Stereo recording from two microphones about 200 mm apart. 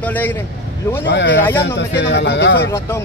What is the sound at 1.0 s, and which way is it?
Speech, 65° left (ahead or behind).